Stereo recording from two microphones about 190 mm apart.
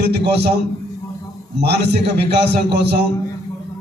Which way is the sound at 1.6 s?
60° right (ahead or behind).